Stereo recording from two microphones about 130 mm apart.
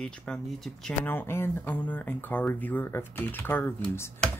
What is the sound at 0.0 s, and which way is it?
Speech, 5° left (ahead or behind).